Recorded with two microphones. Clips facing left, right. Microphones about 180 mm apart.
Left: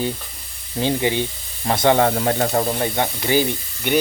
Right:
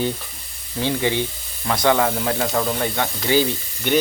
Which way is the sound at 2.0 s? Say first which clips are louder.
Left 3 dB; 40° left (ahead or behind).